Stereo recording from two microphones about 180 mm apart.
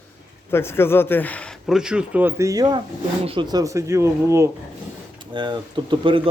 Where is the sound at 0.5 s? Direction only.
15° left (ahead or behind); by 4.5 s 15° right (ahead or behind).